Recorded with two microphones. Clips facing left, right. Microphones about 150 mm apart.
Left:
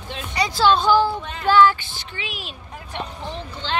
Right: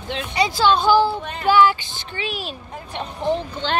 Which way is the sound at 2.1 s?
35° right (ahead or behind).